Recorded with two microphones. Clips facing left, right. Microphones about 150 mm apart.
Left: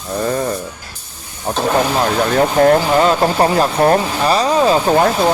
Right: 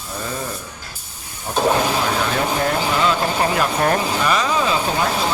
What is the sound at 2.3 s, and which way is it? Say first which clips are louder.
Speech: left 9 dB; 45° left (ahead or behind).